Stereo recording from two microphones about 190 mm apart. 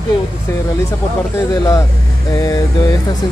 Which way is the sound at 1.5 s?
15° left (ahead or behind).